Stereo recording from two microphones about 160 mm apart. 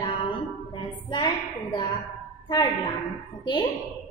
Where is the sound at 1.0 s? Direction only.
30° left (ahead or behind).